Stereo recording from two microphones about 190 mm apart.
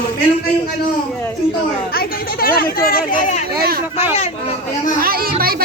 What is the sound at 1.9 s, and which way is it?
Speech, 50° left (ahead or behind).